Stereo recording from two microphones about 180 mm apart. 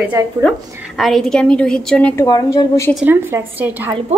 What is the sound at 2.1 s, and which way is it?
Speech, 20° left (ahead or behind).